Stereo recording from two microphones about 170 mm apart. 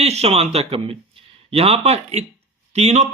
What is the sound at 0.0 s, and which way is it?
Speech, 40° right (ahead or behind).